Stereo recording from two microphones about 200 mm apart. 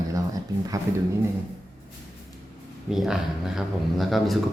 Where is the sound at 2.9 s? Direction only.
Centre (ahead or behind).